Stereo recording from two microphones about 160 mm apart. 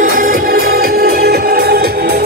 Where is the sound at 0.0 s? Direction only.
60° right (ahead or behind).